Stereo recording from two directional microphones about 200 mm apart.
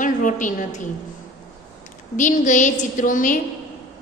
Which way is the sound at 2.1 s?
40° left (ahead or behind).